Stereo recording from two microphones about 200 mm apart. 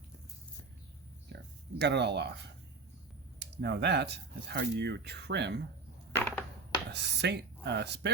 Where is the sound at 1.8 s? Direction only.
60° right (ahead or behind).